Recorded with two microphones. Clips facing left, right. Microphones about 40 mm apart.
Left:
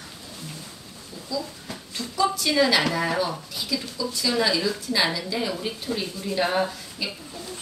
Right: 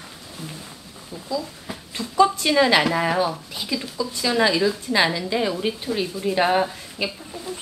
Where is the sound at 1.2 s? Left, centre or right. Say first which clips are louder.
Right 3 dB; centre.